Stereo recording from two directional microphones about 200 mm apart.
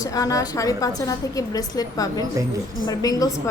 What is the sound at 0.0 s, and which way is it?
A woman's voice, 15° left (ahead or behind).